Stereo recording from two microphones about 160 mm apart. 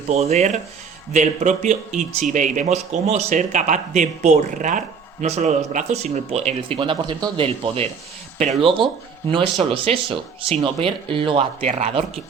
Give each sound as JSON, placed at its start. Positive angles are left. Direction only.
{"t": 0.1, "sound": "speech", "side_deg": -45}